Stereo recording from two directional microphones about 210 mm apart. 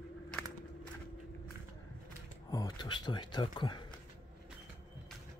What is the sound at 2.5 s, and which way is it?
Speech, 20° left (ahead or behind).